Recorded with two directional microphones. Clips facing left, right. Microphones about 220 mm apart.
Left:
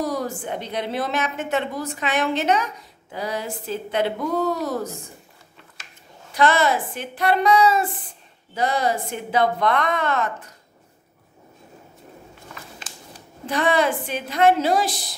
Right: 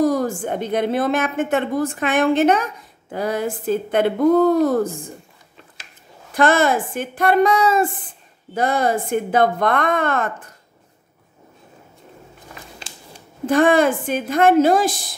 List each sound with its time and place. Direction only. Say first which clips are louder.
0.0 s a woman's voice: right 7 dB; 50° right (ahead or behind)
6.3 s a woman's voice: right 3 dB; 50° right (ahead or behind)
12.7 s a sound: right 1 dB; 25° right (ahead or behind)
13.5 s a woman's voice: right 6 dB; 50° right (ahead or behind)